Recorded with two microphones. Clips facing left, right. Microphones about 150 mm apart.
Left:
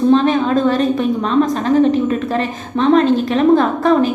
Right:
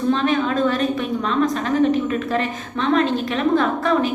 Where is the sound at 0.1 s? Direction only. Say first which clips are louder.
Left 4 dB; 35° left (ahead or behind).